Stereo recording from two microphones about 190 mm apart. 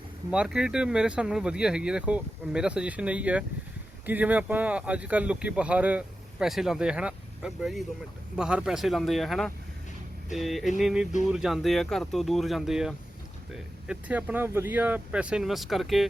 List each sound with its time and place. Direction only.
0.3 s speech: 5° right (ahead or behind)